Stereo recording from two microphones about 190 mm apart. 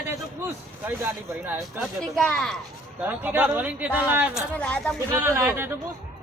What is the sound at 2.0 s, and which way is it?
Speech, 5° left (ahead or behind).